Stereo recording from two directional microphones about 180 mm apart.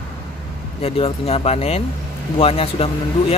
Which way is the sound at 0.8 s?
30° left (ahead or behind).